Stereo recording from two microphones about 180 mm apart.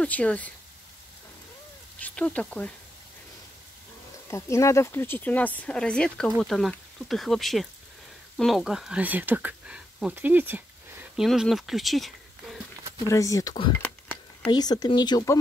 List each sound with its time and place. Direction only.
0.0 s speech: 5° left (ahead or behind)
2.0 s speech: 10° left (ahead or behind)
4.3 s speech: 15° left (ahead or behind); by 11.2 s 10° right (ahead or behind)
11.2 s speech: centre (ahead or behind)
13.0 s speech: 20° left (ahead or behind)